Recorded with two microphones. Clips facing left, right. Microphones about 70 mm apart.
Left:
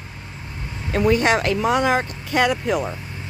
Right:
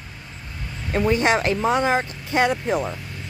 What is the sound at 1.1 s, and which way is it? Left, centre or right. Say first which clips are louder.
Speech: left 2 dB; right.